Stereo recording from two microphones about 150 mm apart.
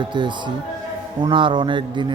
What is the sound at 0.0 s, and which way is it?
Speech, 30° right (ahead or behind).